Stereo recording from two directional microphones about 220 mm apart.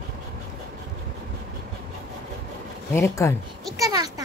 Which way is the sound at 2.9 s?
10° left (ahead or behind).